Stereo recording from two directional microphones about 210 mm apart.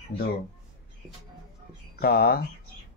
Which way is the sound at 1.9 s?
50° left (ahead or behind).